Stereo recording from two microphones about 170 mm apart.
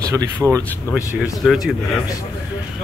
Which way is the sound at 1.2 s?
Centre (ahead or behind).